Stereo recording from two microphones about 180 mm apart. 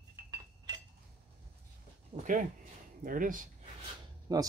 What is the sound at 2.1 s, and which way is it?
Speech, 45° right (ahead or behind).